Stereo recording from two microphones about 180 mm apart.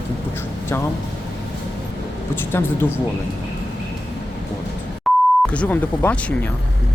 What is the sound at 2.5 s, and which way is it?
Speech, 15° left (ahead or behind).